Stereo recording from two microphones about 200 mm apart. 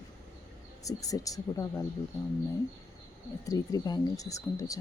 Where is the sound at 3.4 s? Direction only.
20° left (ahead or behind).